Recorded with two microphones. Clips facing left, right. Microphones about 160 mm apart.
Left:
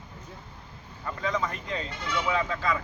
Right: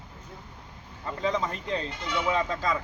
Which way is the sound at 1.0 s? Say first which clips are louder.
Right 2 dB; 25° right (ahead or behind).